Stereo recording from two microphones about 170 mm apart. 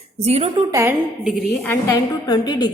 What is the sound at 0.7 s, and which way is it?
Speech, 20° right (ahead or behind).